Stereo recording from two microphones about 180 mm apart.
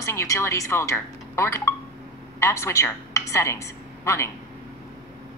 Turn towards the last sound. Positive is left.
turn(degrees=15)  # may be behind; listen again after turning